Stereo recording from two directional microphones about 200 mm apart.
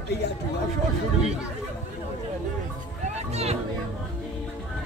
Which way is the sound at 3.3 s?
30° right (ahead or behind).